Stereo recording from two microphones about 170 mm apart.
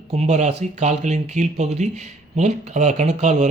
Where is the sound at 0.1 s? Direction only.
40° right (ahead or behind).